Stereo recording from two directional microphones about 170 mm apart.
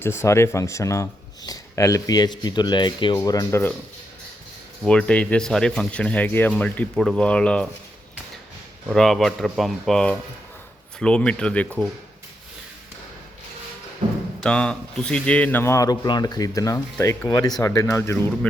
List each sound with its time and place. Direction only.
0.0 s speech: 15° left (ahead or behind)
4.8 s a man's voice: 5° left (ahead or behind)
8.9 s a man's voice: centre (ahead or behind)
14.4 s a man's voice: 5° left (ahead or behind)